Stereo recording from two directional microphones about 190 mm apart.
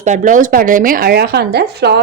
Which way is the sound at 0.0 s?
40° right (ahead or behind).